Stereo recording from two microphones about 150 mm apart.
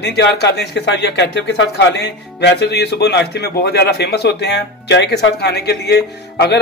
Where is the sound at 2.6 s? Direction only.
90° left.